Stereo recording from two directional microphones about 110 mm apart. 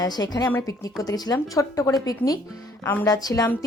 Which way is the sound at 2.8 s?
20° left (ahead or behind).